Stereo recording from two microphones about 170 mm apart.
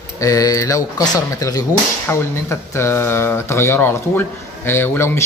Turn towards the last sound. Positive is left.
turn(degrees=15)  # may be behind; listen again after turning